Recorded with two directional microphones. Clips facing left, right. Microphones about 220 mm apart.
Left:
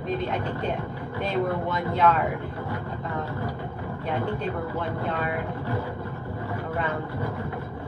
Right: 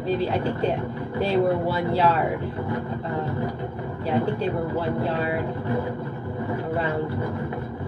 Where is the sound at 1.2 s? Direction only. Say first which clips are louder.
Right 5 dB; 35° right (ahead or behind).